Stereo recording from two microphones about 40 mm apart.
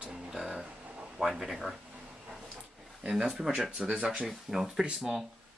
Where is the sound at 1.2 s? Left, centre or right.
Centre.